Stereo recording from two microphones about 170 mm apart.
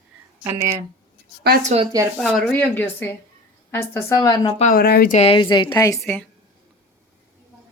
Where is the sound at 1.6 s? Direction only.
35° right (ahead or behind).